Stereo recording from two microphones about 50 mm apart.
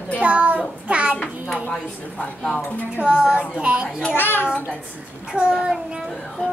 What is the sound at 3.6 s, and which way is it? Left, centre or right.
Speech, right.